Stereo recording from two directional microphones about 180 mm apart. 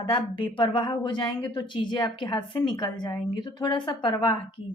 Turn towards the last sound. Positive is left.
turn(degrees=25)  # may be behind; listen again after turning